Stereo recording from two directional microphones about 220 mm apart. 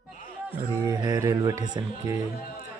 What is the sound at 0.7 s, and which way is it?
Speech, 20° right (ahead or behind).